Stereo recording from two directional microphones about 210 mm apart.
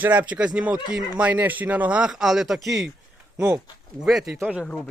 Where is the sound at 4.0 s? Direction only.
Centre (ahead or behind).